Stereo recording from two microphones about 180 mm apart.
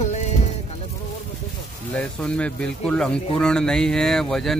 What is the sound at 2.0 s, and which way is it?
Speech, 5° left (ahead or behind).